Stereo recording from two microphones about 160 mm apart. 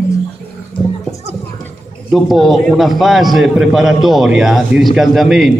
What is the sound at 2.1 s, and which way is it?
A man's voice, centre (ahead or behind).